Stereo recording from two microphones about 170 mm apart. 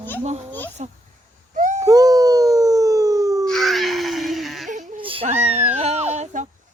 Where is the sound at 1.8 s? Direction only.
20° right (ahead or behind).